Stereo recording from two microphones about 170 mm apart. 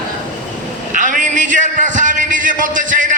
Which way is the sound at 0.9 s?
50° right (ahead or behind).